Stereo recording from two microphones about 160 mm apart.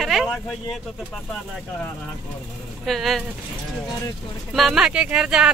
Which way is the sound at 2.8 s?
Centre (ahead or behind).